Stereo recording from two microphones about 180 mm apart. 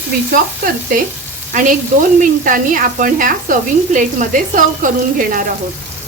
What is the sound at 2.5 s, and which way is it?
Speech, 50° right (ahead or behind).